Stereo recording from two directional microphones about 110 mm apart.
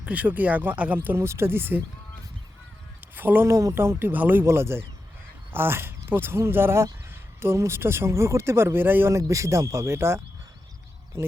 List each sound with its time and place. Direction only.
0.0 s speech: 10° right (ahead or behind)
3.2 s speech: 20° right (ahead or behind)